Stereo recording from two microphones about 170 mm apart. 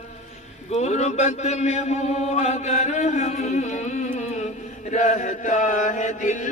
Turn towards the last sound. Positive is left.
turn(degrees=45)  # may be behind; listen again after turning